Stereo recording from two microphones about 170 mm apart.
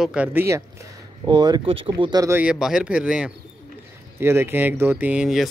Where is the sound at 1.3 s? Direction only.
25° right (ahead or behind).